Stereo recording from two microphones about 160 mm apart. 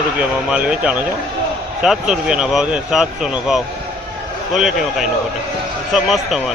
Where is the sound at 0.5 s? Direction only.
10° right (ahead or behind).